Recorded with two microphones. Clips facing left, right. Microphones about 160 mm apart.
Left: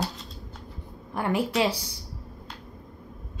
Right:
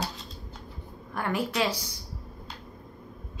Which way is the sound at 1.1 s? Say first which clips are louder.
Left 3 dB; 25° left (ahead or behind).